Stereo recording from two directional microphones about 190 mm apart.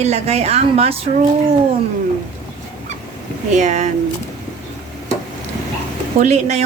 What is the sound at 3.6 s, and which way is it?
Speech, 40° right (ahead or behind).